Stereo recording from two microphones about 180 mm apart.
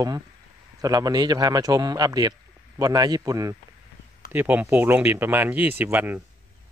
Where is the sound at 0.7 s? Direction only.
20° right (ahead or behind).